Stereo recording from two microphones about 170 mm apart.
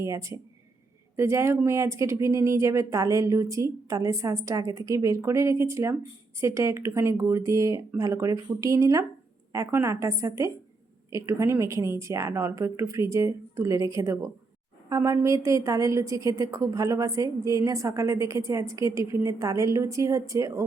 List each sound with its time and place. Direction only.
0.0 s a woman's voice: 20° right (ahead or behind)